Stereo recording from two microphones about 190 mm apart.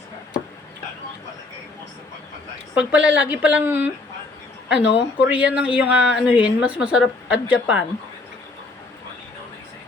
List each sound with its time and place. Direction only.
2.7 s speech: 5° right (ahead or behind)
4.7 s speech: 70° left (ahead or behind)
5.3 s a woman's voice: 5° right (ahead or behind)